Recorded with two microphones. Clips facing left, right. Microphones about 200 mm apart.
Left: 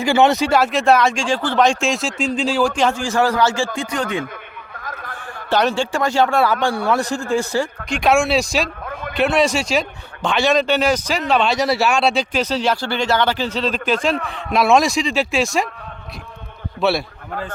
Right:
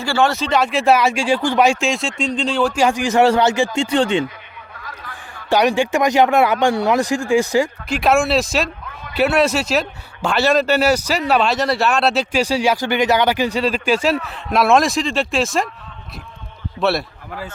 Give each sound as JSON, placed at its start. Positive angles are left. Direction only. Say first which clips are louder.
{"t": 0.0, "sound": "speech", "louder": "left 3 dB", "side_deg": 20}
{"t": 2.7, "sound": "speech", "louder": "right 3 dB", "side_deg": -15}
{"t": 3.8, "sound": "speech", "louder": "right 6 dB", "side_deg": -30}
{"t": 4.8, "sound": "a sound", "louder": "left 4 dB", "side_deg": 45}
{"t": 5.5, "sound": "speech", "louder": "right 2 dB", "side_deg": -15}
{"t": 7.9, "sound": "speech", "louder": "even", "side_deg": -5}
{"t": 8.8, "sound": "a sound", "louder": "left 7 dB", "side_deg": 55}
{"t": 9.1, "sound": "speech", "louder": "right 1 dB", "side_deg": -5}
{"t": 16.8, "sound": "speech", "louder": "even", "side_deg": 0}